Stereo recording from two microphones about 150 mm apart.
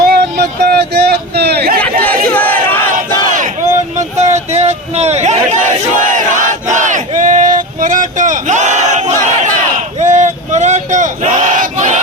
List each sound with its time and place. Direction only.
0.1 s a sound: 90° right
2.0 s crowd: 10° left (ahead or behind)
3.3 s battle cry: 55° right (ahead or behind)